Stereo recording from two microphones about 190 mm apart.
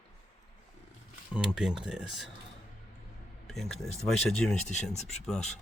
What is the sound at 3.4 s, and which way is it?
Speech, centre (ahead or behind).